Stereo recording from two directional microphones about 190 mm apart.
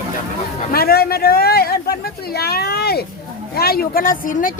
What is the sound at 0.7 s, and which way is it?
Speech, 55° left (ahead or behind).